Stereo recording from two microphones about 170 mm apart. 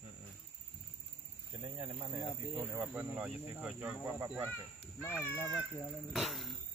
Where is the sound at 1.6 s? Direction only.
25° right (ahead or behind).